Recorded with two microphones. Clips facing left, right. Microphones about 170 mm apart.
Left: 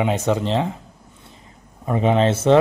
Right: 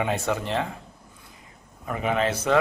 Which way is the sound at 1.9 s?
25° left (ahead or behind).